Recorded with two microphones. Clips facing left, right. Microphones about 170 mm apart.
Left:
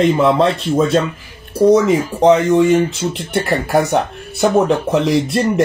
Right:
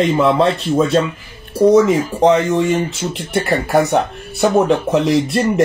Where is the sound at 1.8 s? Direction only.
Centre (ahead or behind).